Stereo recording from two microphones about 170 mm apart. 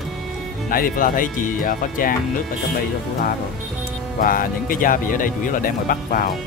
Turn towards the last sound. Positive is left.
turn(degrees=55)  # may be behind; listen again after turning